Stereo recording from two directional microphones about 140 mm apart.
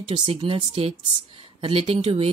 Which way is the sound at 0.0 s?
40° right (ahead or behind).